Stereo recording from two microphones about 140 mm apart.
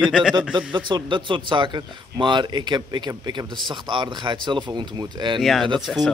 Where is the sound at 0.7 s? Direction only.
35° right (ahead or behind).